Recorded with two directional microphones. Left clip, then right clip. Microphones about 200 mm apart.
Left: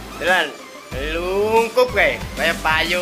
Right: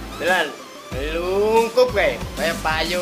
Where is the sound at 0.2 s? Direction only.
10° left (ahead or behind).